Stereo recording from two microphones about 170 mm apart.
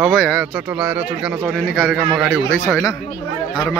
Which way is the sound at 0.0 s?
5° left (ahead or behind).